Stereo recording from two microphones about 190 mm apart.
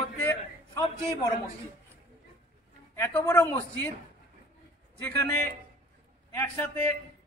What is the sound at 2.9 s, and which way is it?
Speech, 15° left (ahead or behind).